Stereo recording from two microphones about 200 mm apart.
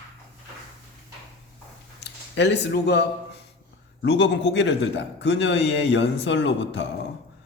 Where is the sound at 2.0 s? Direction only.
60° left (ahead or behind).